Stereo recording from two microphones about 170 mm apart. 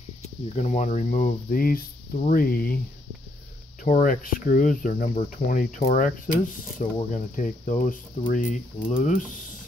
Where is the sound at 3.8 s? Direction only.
50° left (ahead or behind).